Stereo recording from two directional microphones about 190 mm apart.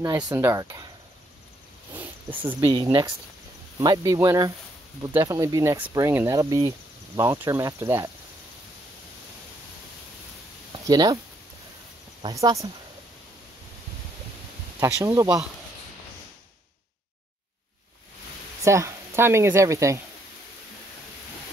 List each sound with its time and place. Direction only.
0.0 s speech: 20° right (ahead or behind)
2.4 s speech: 20° right (ahead or behind)
10.7 s a sound: 20° right (ahead or behind)
12.2 s speech: 20° right (ahead or behind)
14.8 s speech: 15° right (ahead or behind)
18.6 s speech: 15° right (ahead or behind)